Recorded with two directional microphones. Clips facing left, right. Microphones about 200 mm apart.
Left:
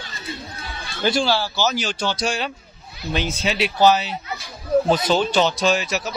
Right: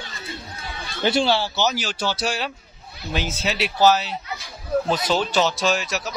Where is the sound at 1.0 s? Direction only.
25° right (ahead or behind).